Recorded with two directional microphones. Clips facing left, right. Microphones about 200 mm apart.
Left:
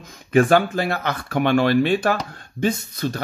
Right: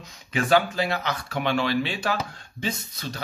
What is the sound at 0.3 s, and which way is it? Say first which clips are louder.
Speech: left 6 dB; 50° left (ahead or behind).